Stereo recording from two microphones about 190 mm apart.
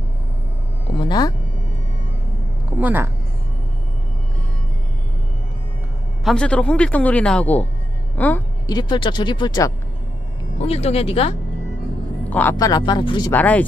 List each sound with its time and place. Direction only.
0.9 s speech: 20° left (ahead or behind)
2.8 s speech: 10° right (ahead or behind)
6.2 s speech: 5° left (ahead or behind)
8.6 s speech: 20° left (ahead or behind)
10.6 s speech: 35° left (ahead or behind)
12.3 s speech: 10° left (ahead or behind)
13.3 s speech: 10° left (ahead or behind)